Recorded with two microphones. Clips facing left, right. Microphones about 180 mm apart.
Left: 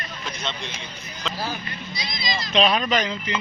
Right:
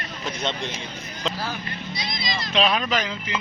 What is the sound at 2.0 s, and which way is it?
Vehicle, 55° right (ahead or behind).